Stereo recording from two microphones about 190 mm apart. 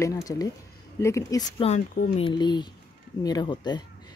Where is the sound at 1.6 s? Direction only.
40° left (ahead or behind).